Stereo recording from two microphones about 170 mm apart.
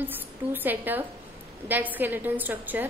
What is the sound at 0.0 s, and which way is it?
A woman's voice, 10° right (ahead or behind).